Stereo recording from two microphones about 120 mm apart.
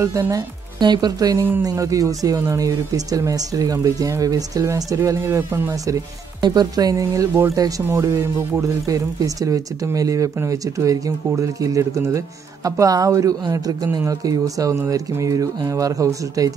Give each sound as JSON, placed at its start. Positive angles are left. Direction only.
{"t": 0.0, "sound": "speech", "side_deg": -25}
{"t": 6.4, "sound": "speech", "side_deg": -35}